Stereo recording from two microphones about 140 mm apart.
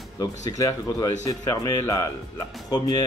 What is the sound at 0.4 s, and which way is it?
Speech, 25° left (ahead or behind).